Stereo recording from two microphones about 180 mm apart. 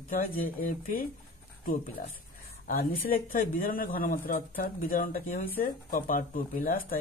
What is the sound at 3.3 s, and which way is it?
Speech, 50° left (ahead or behind).